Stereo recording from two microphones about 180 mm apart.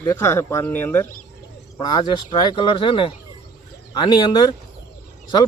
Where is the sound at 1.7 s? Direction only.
25° left (ahead or behind).